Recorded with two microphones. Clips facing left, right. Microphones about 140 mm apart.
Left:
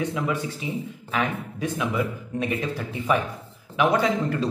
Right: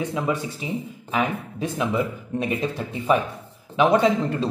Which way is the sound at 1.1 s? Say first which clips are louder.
Right 2 dB; 25° right (ahead or behind).